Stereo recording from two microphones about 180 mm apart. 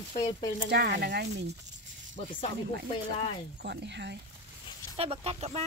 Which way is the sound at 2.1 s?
35° left (ahead or behind).